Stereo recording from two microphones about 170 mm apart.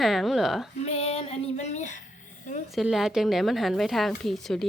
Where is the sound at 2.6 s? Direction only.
Centre (ahead or behind).